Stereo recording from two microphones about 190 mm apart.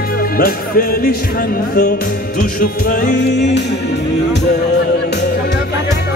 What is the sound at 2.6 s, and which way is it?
Music, 45° left (ahead or behind).